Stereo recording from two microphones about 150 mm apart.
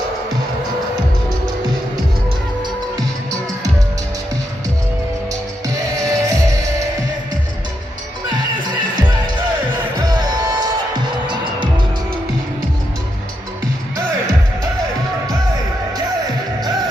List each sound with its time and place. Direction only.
5.7 s music: 20° right (ahead or behind)
9.9 s music: 25° right (ahead or behind)